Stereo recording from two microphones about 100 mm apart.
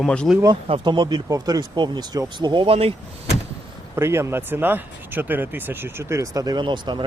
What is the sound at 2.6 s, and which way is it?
Speech, 70° right (ahead or behind).